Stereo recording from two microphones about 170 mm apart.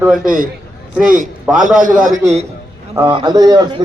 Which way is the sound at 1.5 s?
5° right (ahead or behind).